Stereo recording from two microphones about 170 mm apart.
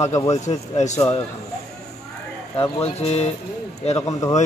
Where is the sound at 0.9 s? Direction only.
20° left (ahead or behind).